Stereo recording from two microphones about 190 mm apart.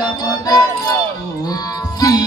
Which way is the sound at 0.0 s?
20° left (ahead or behind).